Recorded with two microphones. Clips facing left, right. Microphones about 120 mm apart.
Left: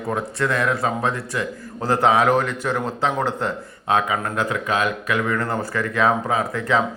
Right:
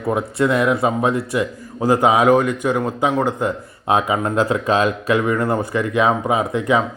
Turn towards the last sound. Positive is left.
turn(degrees=-15)  # may be behind; listen again after turning